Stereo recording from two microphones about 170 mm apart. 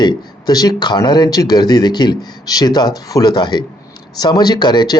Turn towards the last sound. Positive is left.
turn(degrees=25)  # may be behind; listen again after turning